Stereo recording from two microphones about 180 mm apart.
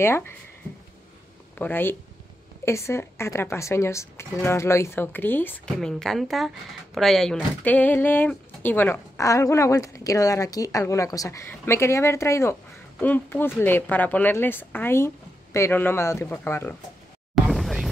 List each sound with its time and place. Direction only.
0.0 s speech: 15° left (ahead or behind)
1.6 s speech: 10° left (ahead or behind)
17.5 s a sound: centre (ahead or behind)